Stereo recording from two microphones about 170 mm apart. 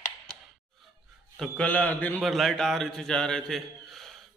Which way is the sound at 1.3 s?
5° left (ahead or behind).